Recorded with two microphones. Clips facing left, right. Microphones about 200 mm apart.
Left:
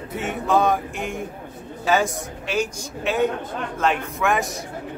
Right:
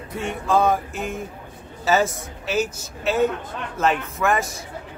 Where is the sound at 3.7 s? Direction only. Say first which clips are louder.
Right 2 dB; 5° right (ahead or behind).